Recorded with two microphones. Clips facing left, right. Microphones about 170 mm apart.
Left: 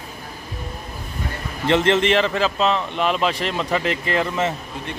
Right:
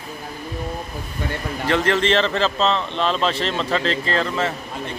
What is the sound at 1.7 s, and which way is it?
A man's voice, 20° left (ahead or behind).